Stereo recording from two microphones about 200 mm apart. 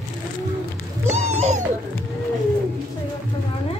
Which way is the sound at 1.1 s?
35° right (ahead or behind).